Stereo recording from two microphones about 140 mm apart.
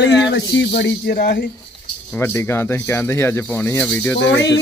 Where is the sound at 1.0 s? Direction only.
90° left.